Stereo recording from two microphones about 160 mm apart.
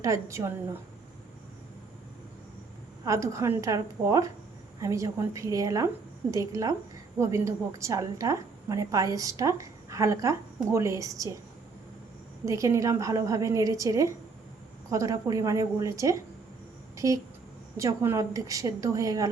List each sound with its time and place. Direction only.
0.0 s a woman's voice: 20° right (ahead or behind)
3.0 s a woman's voice: 20° right (ahead or behind)
12.5 s a woman's voice: 20° right (ahead or behind)